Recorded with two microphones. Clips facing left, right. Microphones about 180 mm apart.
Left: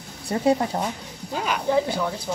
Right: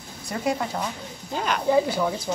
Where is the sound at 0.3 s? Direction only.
30° left (ahead or behind).